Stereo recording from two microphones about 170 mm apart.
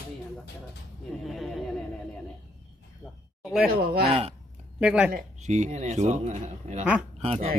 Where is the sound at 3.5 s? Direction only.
5° right (ahead or behind).